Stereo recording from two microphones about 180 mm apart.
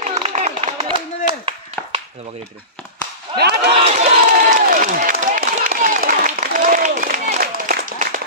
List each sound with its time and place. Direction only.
0.0 s clapping: 40° right (ahead or behind)
3.3 s speech: 65° right (ahead or behind)
3.8 s a sound: 40° right (ahead or behind)